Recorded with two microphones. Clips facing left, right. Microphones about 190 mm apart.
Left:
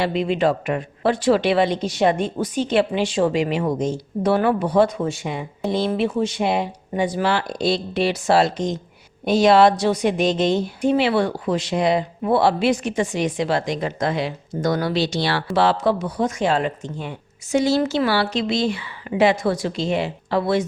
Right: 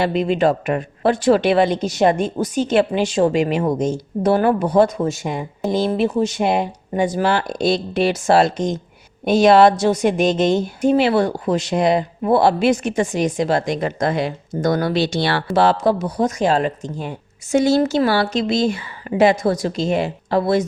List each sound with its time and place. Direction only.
0.0 s speech: 45° right (ahead or behind)
15.5 s speech: 45° right (ahead or behind)